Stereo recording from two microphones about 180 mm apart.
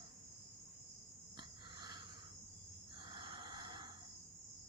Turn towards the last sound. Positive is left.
turn(degrees=-25)  # may be behind; listen again after turning